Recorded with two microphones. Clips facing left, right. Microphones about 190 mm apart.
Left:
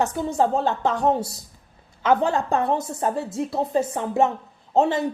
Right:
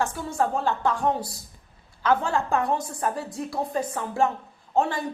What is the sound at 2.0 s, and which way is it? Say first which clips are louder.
Speech: left 3 dB; 20° left (ahead or behind).